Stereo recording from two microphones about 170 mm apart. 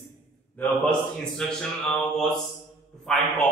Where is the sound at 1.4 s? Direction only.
5° left (ahead or behind).